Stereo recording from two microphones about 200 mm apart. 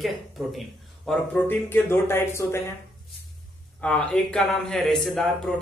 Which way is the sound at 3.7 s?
5° left (ahead or behind).